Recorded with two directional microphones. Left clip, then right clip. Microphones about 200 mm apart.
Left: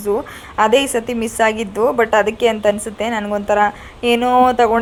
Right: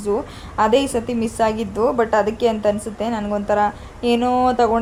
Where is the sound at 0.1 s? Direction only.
25° left (ahead or behind).